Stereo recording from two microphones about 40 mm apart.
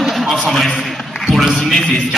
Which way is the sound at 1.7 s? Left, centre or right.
Centre.